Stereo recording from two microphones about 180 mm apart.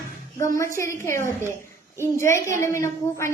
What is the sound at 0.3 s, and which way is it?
A woman's voice, 15° left (ahead or behind).